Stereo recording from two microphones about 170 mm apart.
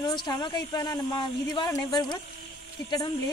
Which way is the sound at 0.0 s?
25° left (ahead or behind).